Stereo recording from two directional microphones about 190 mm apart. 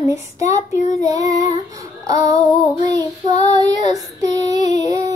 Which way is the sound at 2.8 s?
20° right (ahead or behind).